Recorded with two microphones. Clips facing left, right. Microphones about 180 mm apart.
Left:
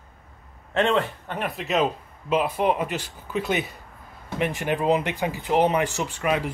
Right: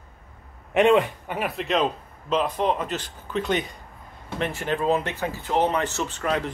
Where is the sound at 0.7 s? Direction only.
15° right (ahead or behind).